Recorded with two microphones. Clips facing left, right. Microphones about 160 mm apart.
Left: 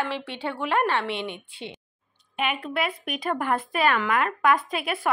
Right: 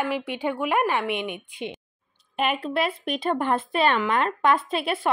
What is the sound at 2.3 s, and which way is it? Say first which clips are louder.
Speech: right 3 dB; 35° right (ahead or behind).